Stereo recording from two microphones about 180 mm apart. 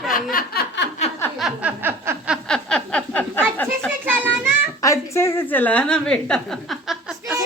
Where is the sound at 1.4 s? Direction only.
10° right (ahead or behind).